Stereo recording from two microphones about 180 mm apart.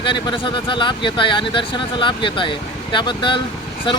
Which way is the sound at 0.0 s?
25° left (ahead or behind).